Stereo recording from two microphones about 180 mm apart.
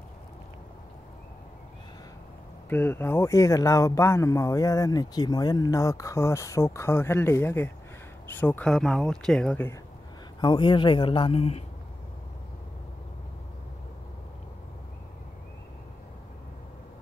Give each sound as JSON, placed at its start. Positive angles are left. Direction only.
{"t": 2.7, "sound": "speech", "side_deg": 10}
{"t": 10.4, "sound": "a man's voice", "side_deg": 25}